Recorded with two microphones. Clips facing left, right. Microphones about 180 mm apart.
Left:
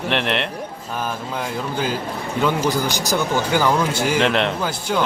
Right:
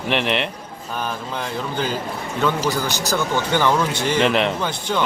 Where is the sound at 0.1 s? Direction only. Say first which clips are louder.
Right 1 dB; centre (ahead or behind).